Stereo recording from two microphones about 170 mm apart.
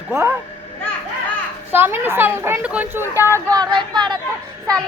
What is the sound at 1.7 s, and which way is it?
A woman's voice, 15° right (ahead or behind).